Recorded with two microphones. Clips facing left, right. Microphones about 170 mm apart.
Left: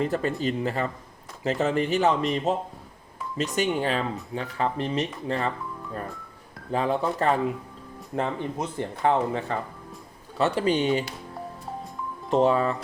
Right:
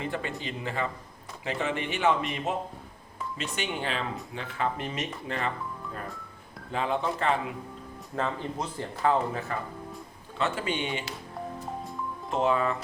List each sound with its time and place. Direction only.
0.0 s speech: 40° left (ahead or behind)
6.7 s speech: 40° left (ahead or behind)
8.1 s speech: 20° left (ahead or behind)
10.3 s speech: 35° left (ahead or behind)
12.4 s speech: 35° left (ahead or behind)